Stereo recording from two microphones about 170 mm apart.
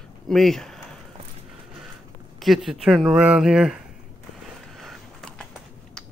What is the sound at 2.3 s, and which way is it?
Speech, centre (ahead or behind).